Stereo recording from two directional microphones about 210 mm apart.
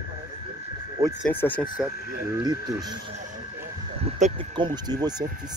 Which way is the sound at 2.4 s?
20° right (ahead or behind).